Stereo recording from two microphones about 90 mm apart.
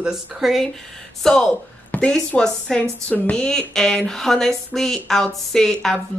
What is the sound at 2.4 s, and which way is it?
Speech, 10° left (ahead or behind).